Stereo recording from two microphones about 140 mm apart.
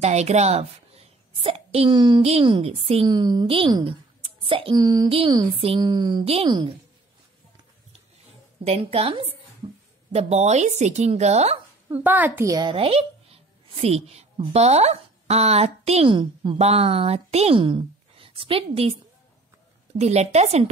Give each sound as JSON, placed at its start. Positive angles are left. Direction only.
{"t": 0.0, "sound": "a woman's voice", "side_deg": -50}
{"t": 3.1, "sound": "a woman's voice", "side_deg": -30}
{"t": 6.2, "sound": "speech", "side_deg": -45}
{"t": 8.6, "sound": "speech", "side_deg": -45}
{"t": 9.6, "sound": "a sound", "side_deg": -45}
{"t": 10.1, "sound": "speech", "side_deg": -50}
{"t": 11.9, "sound": "a child's voice", "side_deg": -15}
{"t": 12.7, "sound": "a woman's voice", "side_deg": -45}
{"t": 16.5, "sound": "speech", "side_deg": -45}
{"t": 20.0, "sound": "speech", "side_deg": -50}